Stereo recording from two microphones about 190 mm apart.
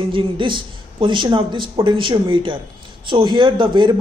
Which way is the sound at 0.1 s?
25° right (ahead or behind).